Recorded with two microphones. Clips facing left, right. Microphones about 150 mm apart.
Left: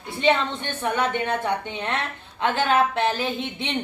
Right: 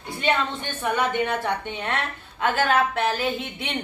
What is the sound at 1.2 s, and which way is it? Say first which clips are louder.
A woman's voice: even; 15° left (ahead or behind).